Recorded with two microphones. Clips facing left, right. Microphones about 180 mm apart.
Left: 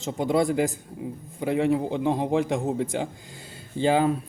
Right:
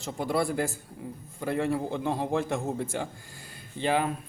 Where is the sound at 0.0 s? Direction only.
20° left (ahead or behind).